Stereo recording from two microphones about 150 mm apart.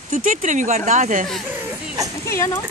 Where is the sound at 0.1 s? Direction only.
55° right (ahead or behind).